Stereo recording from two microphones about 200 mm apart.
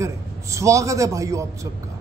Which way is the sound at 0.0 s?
15° right (ahead or behind).